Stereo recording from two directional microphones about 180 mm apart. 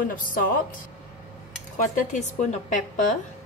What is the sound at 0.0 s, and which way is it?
Speech, 50° left (ahead or behind).